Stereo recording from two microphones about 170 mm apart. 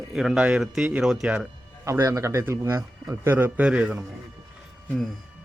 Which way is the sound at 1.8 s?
15° right (ahead or behind).